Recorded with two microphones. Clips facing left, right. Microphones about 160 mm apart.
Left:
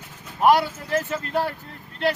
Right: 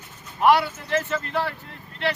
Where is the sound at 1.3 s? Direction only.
45° left (ahead or behind).